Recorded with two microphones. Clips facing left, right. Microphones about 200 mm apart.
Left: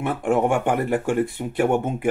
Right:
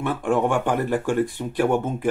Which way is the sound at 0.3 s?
15° left (ahead or behind).